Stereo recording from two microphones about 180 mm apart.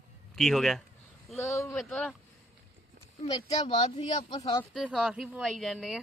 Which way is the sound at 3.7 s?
25° left (ahead or behind).